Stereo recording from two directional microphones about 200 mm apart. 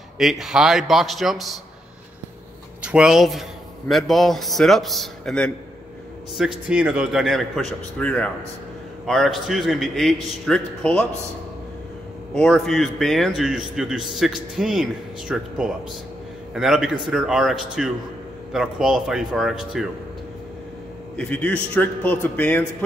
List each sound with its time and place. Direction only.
0.2 s a man's voice: centre (ahead or behind)
2.8 s a man's voice: 5° right (ahead or behind)
12.4 s a man's voice: centre (ahead or behind)
21.2 s a man's voice: 5° left (ahead or behind)